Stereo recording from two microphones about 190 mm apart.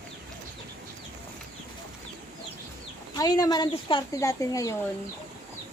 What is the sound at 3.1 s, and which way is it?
Speech, 20° left (ahead or behind).